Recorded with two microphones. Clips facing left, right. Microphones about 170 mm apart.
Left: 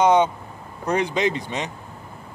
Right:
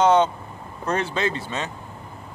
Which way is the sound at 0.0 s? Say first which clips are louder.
Even; 10° left (ahead or behind).